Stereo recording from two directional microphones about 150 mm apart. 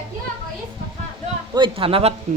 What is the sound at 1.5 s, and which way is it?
Speech, 35° right (ahead or behind).